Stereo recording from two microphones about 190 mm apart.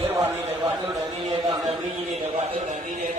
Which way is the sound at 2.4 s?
40° right (ahead or behind).